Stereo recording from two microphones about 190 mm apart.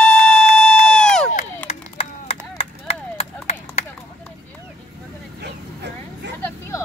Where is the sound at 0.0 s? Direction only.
5° left (ahead or behind).